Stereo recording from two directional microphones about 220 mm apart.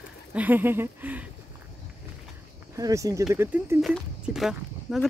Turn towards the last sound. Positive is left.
turn(degrees=0)  # may be behind; listen again after turning